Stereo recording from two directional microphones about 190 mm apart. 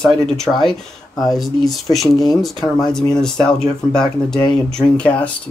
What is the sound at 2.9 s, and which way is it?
A man's voice, 5° left (ahead or behind).